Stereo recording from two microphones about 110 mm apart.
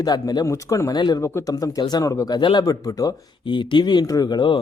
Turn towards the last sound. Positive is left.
turn(degrees=45)  # may be behind; listen again after turning